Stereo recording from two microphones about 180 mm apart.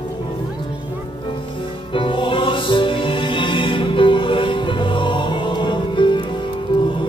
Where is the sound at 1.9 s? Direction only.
30° left (ahead or behind).